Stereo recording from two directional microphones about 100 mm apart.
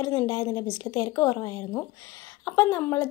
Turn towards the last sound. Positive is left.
turn(degrees=25)  # may be behind; listen again after turning